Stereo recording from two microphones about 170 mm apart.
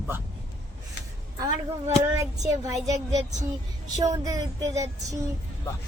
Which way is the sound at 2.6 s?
20° right (ahead or behind).